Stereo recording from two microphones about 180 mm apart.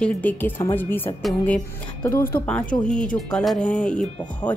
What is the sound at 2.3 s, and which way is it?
Speech, 10° left (ahead or behind).